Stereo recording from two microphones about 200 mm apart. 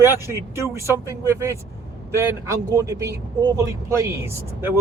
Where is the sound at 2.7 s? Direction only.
15° right (ahead or behind).